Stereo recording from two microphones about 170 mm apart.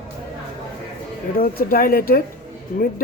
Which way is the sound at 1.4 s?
60° left (ahead or behind).